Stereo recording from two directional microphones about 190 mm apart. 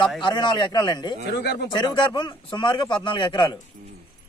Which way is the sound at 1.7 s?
25° left (ahead or behind).